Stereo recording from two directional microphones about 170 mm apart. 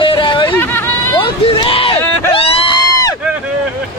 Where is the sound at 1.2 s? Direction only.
30° left (ahead or behind).